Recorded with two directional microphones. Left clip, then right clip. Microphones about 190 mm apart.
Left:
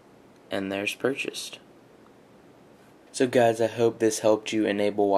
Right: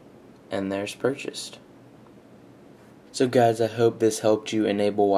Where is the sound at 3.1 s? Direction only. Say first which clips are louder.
Right 1 dB; 5° left (ahead or behind).